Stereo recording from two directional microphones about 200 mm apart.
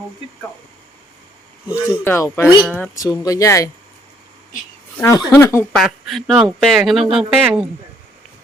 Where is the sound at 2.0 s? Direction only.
10° left (ahead or behind).